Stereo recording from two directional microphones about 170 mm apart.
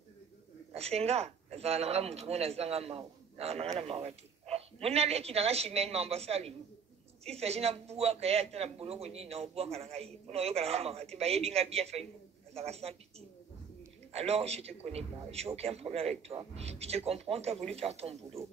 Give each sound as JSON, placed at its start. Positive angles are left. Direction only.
{"t": 0.7, "sound": "a man's voice", "side_deg": -35}
{"t": 3.8, "sound": "a sound", "side_deg": -35}
{"t": 4.8, "sound": "a man's voice", "side_deg": -35}
{"t": 14.1, "sound": "a man's voice", "side_deg": -35}